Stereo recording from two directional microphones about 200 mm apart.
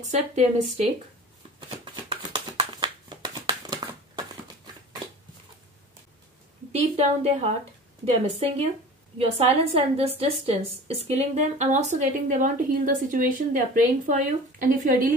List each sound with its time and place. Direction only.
0.0 s a woman's voice: 35° right (ahead or behind)
2.0 s a sound: 25° right (ahead or behind)
6.7 s a woman's voice: 30° right (ahead or behind)
9.8 s a woman's voice: 30° right (ahead or behind)